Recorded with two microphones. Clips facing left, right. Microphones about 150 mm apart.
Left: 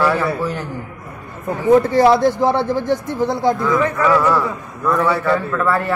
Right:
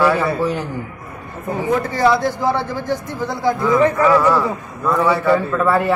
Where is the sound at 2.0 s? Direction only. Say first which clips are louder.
Left 4 dB; 25° left (ahead or behind).